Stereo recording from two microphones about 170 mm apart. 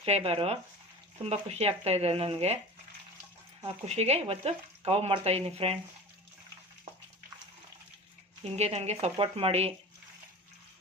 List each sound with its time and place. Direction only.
0.0 s speech: 35° right (ahead or behind)
3.8 s speech: 40° right (ahead or behind)
8.5 s speech: 40° right (ahead or behind)